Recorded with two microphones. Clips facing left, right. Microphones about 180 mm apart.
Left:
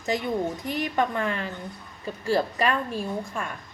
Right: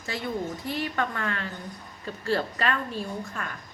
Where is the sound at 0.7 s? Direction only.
15° left (ahead or behind).